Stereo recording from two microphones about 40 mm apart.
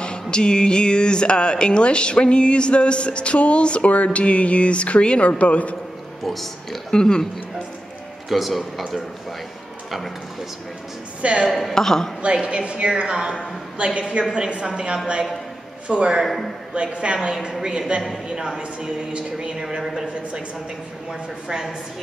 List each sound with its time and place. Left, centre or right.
0.0 s speech: left
6.2 s speech: centre
6.9 s a woman's voice: centre
8.3 s speech: centre
11.5 s a woman's voice: centre
12.4 s a woman's voice: right
17.3 s a woman's voice: centre
19.8 s speech: centre
21.1 s a woman's voice: centre